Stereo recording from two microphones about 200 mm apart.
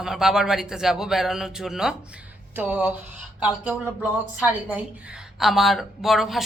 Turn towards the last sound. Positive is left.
turn(degrees=0)  # may be behind; listen again after turning